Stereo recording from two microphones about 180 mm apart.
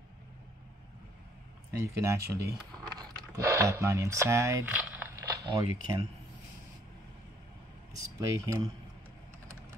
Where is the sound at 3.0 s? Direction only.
15° right (ahead or behind).